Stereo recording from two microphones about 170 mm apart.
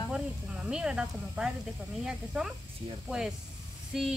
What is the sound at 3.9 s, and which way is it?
Speech, 5° right (ahead or behind).